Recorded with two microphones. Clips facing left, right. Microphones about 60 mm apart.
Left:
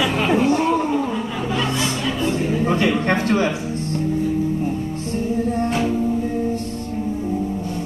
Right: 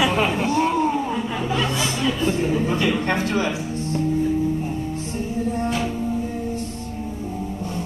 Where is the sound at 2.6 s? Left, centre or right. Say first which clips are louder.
Left 3 dB; left.